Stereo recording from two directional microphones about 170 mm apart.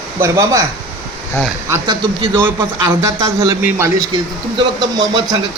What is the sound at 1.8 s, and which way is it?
Speech, 25° right (ahead or behind).